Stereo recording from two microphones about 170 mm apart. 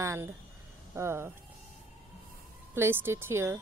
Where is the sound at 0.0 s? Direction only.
15° right (ahead or behind).